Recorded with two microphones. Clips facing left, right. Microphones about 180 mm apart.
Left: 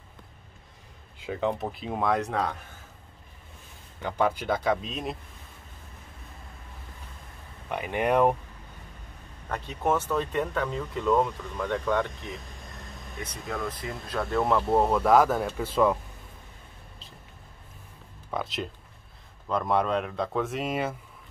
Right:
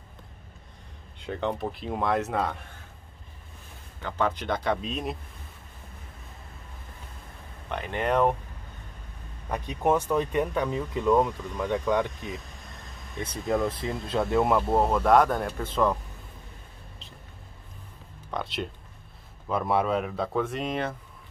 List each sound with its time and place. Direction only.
1.2 s speech: 5° left (ahead or behind)
4.0 s speech: 10° left (ahead or behind)
7.7 s speech: 10° left (ahead or behind)
9.5 s speech: 15° right (ahead or behind)
13.2 s speech: 30° right (ahead or behind)
14.7 s speech: centre (ahead or behind)
18.3 s speech: centre (ahead or behind)